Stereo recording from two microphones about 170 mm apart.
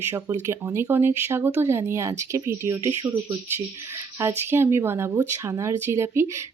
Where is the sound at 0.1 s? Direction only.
15° right (ahead or behind).